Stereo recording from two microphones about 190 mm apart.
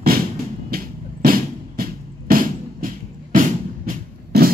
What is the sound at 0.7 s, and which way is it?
Music, 50° right (ahead or behind).